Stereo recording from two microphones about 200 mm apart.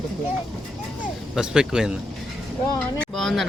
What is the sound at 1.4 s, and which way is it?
Speech, 5° right (ahead or behind).